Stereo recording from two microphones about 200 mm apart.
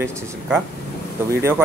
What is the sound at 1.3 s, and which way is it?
Speech, 10° right (ahead or behind).